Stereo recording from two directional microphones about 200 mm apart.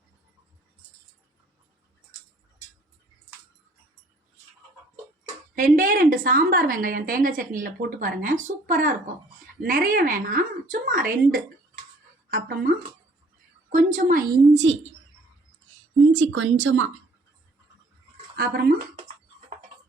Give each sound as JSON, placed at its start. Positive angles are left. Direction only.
{"t": 5.5, "sound": "a woman's voice", "side_deg": -40}
{"t": 16.1, "sound": "speech", "side_deg": -75}
{"t": 18.3, "sound": "a woman's voice", "side_deg": -50}